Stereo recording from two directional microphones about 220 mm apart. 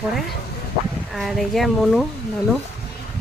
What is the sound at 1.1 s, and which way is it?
Speech, centre (ahead or behind).